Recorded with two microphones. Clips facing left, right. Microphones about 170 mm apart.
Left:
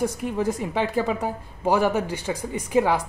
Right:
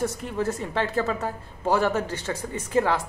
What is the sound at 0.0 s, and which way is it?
A woman's voice, 10° left (ahead or behind).